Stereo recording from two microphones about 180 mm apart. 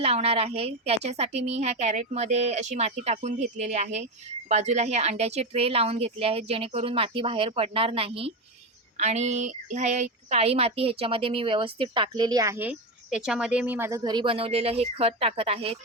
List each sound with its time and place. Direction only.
0.0 s a woman's voice: 35° right (ahead or behind)